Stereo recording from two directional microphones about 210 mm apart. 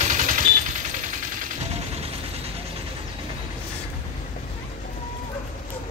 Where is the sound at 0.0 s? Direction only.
35° right (ahead or behind).